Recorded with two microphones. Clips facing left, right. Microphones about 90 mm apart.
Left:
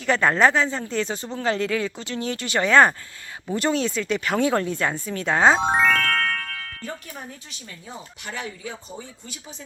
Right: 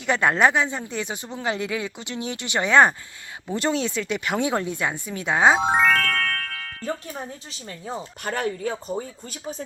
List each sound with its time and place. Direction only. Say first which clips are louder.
0.0 s speech: left 1 dB; 20° right (ahead or behind); by 6.0 s centre (ahead or behind)
6.8 s speech: right 7 dB; 30° right (ahead or behind)